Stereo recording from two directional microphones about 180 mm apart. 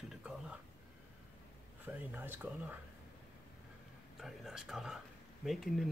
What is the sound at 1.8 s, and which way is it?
Speech, 10° right (ahead or behind).